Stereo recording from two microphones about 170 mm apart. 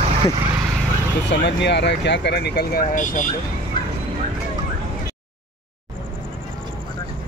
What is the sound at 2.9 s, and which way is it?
Speech, 50° left (ahead or behind).